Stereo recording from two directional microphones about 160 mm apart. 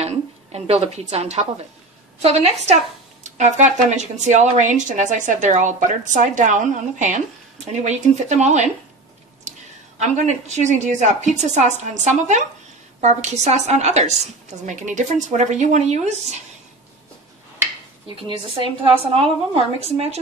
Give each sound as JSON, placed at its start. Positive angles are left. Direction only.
{"t": 0.0, "sound": "a sound", "side_deg": -40}
{"t": 2.2, "sound": "a woman's voice", "side_deg": -40}
{"t": 9.9, "sound": "speech", "side_deg": -45}
{"t": 19.1, "sound": "a woman's voice", "side_deg": -35}